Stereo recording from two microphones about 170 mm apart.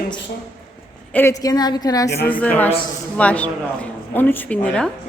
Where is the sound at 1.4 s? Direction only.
25° left (ahead or behind).